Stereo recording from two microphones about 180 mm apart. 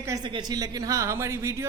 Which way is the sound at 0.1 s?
20° right (ahead or behind).